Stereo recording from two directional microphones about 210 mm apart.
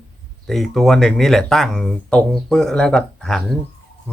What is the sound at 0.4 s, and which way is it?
Speech, centre (ahead or behind).